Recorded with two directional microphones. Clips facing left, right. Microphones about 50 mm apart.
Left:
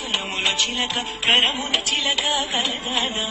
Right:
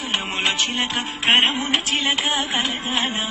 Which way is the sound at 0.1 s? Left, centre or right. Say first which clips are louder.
Right 1 dB; right.